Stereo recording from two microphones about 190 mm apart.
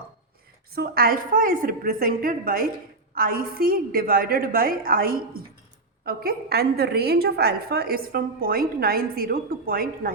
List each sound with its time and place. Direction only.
0.8 s a woman's voice: 50° right (ahead or behind)